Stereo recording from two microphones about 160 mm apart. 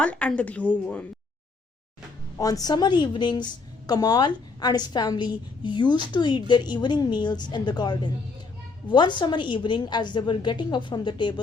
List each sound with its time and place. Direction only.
0.0 s a woman's voice: 10° left (ahead or behind)
2.4 s a woman's voice: 25° left (ahead or behind)